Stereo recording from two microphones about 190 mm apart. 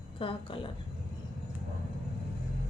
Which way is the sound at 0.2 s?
30° left (ahead or behind).